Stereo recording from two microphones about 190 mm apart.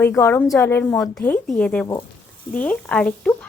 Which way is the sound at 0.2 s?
15° left (ahead or behind).